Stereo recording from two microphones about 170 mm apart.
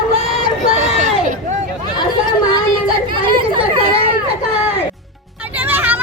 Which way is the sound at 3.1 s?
30° right (ahead or behind).